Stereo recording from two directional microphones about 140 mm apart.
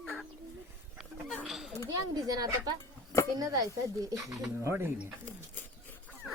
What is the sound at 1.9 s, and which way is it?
Speech, 25° right (ahead or behind).